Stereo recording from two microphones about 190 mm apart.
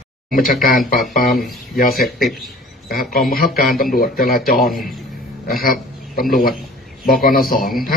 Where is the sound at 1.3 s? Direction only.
Centre (ahead or behind).